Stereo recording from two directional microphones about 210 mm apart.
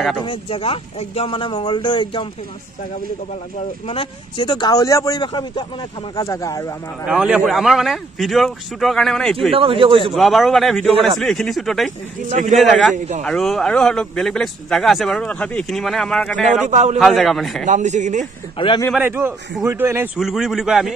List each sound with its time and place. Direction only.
0.2 s speech: 25° left (ahead or behind)
3.8 s speech: 25° left (ahead or behind)
7.1 s speech: 5° right (ahead or behind)
9.5 s speech: 25° right (ahead or behind)
10.1 s speech: centre (ahead or behind)
12.3 s speech: 35° right (ahead or behind)
12.5 s speech: centre (ahead or behind)
16.6 s speech: 35° right (ahead or behind)
17.0 s speech: centre (ahead or behind)
17.6 s speech: 35° right (ahead or behind)
18.6 s speech: 25° left (ahead or behind)
18.9 s speech: 10° right (ahead or behind)